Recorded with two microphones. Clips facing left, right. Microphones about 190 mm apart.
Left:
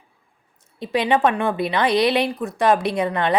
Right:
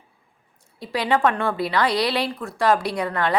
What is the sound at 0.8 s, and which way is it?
A woman's voice, 20° left (ahead or behind).